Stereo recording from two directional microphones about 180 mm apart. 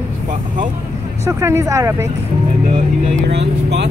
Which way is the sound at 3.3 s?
70° right (ahead or behind).